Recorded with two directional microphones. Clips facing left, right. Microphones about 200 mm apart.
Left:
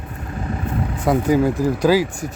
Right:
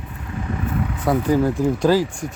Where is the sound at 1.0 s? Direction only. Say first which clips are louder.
Left 2 dB; 15° left (ahead or behind).